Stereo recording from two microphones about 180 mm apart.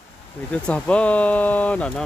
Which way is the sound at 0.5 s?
5° left (ahead or behind).